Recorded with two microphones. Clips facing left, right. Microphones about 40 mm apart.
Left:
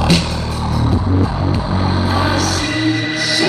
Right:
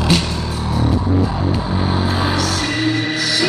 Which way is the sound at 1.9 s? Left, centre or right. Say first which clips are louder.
Left 3 dB; left.